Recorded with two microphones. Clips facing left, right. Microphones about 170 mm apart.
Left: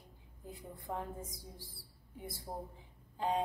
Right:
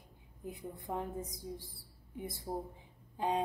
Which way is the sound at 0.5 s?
20° right (ahead or behind).